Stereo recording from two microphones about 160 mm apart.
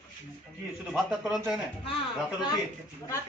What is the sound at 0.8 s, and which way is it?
Speech, centre (ahead or behind).